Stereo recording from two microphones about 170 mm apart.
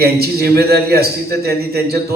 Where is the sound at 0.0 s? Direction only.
65° right (ahead or behind).